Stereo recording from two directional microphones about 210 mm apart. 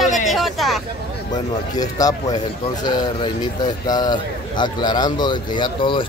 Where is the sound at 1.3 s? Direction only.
20° left (ahead or behind).